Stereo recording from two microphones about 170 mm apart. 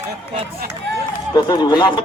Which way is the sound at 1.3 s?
25° left (ahead or behind).